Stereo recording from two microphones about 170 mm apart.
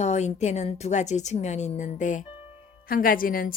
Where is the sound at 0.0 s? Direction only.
40° left (ahead or behind).